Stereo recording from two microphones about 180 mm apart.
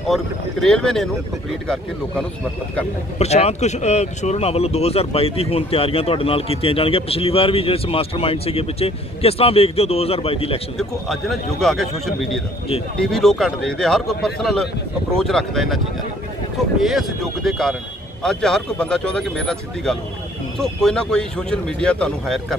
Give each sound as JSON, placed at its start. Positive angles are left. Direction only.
{"t": 0.1, "sound": "speech", "side_deg": 0}
{"t": 3.2, "sound": "speech", "side_deg": 35}
{"t": 10.8, "sound": "speech", "side_deg": 0}